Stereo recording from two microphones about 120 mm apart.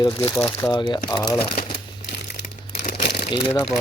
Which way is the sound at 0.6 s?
35° left (ahead or behind).